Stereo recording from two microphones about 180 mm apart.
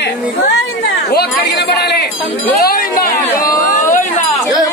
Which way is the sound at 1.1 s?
65° left (ahead or behind).